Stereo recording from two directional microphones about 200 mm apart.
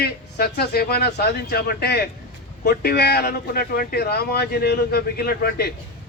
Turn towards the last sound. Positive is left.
turn(degrees=50)  # may be behind; listen again after turning